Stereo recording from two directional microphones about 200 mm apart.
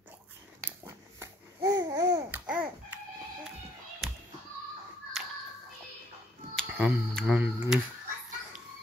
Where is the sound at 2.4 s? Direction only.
5° right (ahead or behind).